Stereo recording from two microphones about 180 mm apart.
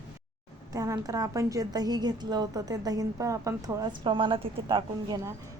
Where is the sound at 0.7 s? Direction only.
20° right (ahead or behind).